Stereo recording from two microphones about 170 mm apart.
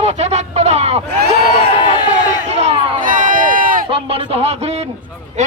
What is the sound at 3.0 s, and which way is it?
Run, 50° right (ahead or behind).